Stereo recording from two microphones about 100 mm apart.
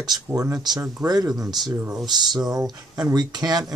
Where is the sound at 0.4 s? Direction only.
40° right (ahead or behind).